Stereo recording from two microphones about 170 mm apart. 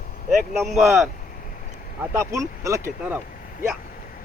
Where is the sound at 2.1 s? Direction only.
15° right (ahead or behind).